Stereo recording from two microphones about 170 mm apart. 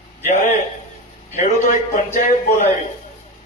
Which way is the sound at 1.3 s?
40° left (ahead or behind).